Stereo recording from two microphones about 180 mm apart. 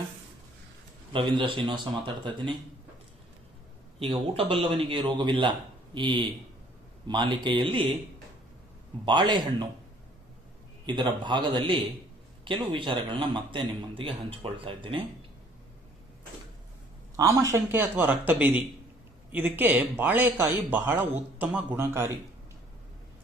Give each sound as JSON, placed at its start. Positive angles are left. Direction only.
{"t": 1.1, "sound": "a man's voice", "side_deg": -25}
{"t": 4.0, "sound": "a man's voice", "side_deg": -30}
{"t": 9.0, "sound": "a man's voice", "side_deg": -25}
{"t": 10.9, "sound": "a man's voice", "side_deg": -25}
{"t": 17.2, "sound": "speech", "side_deg": -20}